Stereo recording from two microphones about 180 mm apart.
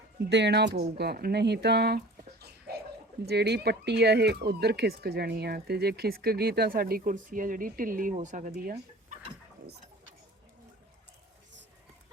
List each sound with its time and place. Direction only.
0.3 s speech: 70° right (ahead or behind)
3.2 s speech: 65° right (ahead or behind); by 9.1 s 45° right (ahead or behind)